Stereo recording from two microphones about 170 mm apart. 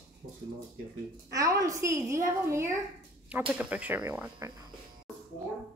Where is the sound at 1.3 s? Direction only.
20° right (ahead or behind).